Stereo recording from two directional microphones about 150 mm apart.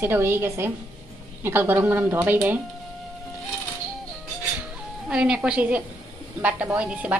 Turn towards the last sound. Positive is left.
turn(degrees=-10)  # may be behind; listen again after turning